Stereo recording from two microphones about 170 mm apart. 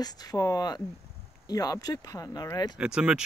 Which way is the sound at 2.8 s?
5° right (ahead or behind).